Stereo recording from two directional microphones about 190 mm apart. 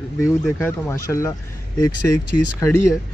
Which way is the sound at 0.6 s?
10° left (ahead or behind).